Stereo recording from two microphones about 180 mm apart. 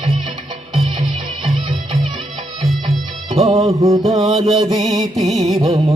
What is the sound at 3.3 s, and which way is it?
Music, 35° right (ahead or behind).